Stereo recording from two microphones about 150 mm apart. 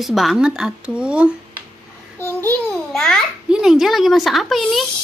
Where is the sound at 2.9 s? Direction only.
Centre (ahead or behind).